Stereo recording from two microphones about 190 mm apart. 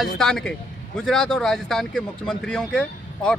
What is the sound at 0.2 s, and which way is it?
A man's voice, 5° left (ahead or behind).